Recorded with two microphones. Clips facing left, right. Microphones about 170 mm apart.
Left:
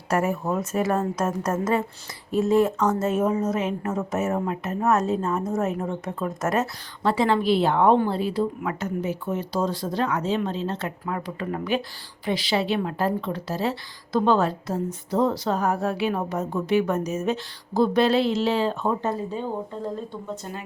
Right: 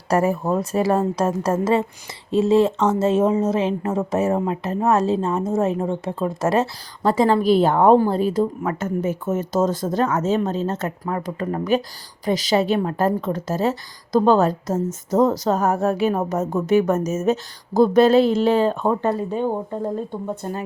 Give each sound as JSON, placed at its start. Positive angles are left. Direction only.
{"t": 0.1, "sound": "a woman's voice", "side_deg": -35}